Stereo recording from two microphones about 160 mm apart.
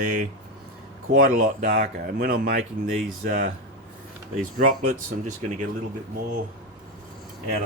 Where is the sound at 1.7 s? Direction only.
65° right (ahead or behind); by 5.5 s 50° right (ahead or behind).